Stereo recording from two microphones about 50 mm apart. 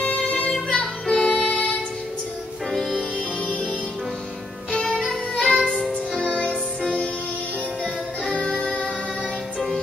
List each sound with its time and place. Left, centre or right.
0.5 s music: centre
2.7 s music: centre
4.7 s music: centre
7.8 s music: centre